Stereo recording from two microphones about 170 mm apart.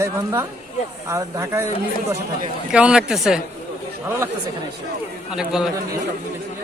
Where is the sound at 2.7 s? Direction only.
5° right (ahead or behind).